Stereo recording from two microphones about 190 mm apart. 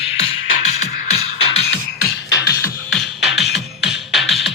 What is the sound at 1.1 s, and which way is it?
Music, 30° left (ahead or behind).